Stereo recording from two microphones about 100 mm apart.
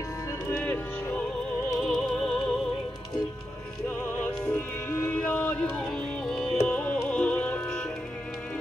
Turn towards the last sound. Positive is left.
turn(degrees=10)  # may be behind; listen again after turning